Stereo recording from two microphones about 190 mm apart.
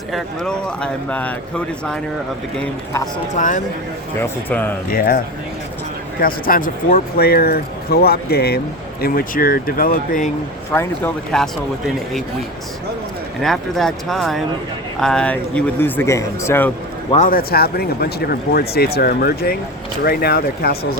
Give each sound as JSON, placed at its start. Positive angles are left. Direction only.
{"t": 0.1, "sound": "speech", "side_deg": 5}
{"t": 3.3, "sound": "speech", "side_deg": 40}
{"t": 4.2, "sound": "speech", "side_deg": 10}
{"t": 4.9, "sound": "speech", "side_deg": 50}
{"t": 10.7, "sound": "speech", "side_deg": 15}
{"t": 13.4, "sound": "speech", "side_deg": 0}
{"t": 17.2, "sound": "speech", "side_deg": 50}